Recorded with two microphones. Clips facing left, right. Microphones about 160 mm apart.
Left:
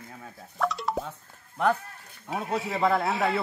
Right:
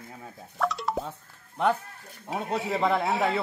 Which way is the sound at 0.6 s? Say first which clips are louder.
Even; centre (ahead or behind).